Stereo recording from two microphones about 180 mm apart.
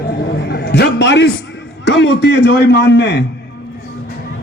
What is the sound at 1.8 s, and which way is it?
A man's voice, 80° left.